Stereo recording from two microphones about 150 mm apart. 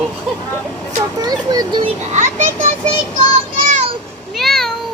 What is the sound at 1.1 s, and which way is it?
Speech, 25° right (ahead or behind).